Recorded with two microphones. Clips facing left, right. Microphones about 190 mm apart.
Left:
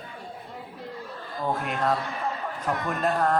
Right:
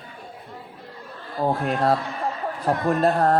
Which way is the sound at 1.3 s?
35° right (ahead or behind).